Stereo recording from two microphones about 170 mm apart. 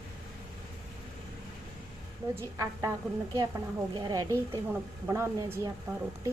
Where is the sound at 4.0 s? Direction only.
20° right (ahead or behind).